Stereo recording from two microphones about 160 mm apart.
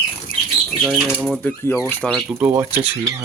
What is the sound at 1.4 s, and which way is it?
Speech, 15° left (ahead or behind).